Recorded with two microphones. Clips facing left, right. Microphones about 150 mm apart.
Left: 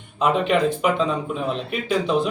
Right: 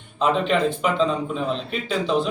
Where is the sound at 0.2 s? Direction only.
10° left (ahead or behind).